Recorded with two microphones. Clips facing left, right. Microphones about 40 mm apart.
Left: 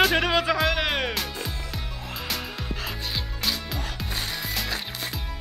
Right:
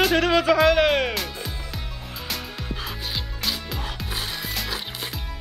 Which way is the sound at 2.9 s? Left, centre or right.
Centre.